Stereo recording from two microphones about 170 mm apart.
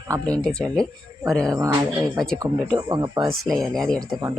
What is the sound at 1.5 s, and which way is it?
Speech, 20° right (ahead or behind).